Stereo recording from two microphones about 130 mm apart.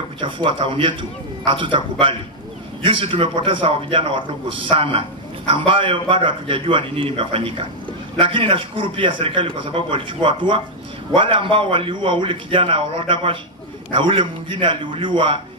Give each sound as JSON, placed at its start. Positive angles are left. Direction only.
{"t": 0.2, "sound": "a man's voice", "side_deg": -40}